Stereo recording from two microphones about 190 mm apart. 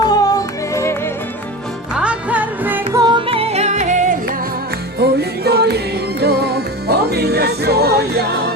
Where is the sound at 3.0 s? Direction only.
25° right (ahead or behind).